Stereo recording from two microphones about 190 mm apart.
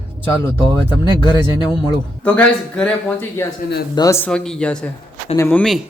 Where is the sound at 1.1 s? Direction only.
20° left (ahead or behind).